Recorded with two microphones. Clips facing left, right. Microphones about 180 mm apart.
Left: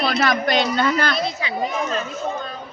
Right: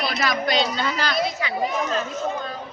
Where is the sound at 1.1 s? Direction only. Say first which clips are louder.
Even; 20° left (ahead or behind).